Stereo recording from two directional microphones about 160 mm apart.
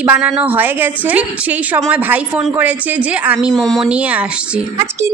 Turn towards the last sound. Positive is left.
turn(degrees=-10)  # may be behind; listen again after turning